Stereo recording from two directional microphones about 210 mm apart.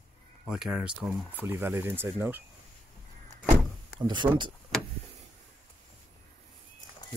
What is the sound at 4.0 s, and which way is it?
Speech, 20° right (ahead or behind).